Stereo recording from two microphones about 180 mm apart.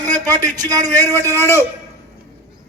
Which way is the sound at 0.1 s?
45° right (ahead or behind).